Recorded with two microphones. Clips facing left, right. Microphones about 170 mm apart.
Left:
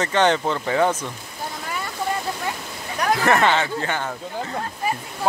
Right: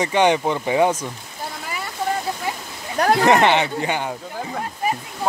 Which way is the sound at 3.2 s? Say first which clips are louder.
Right 2 dB; 20° right (ahead or behind).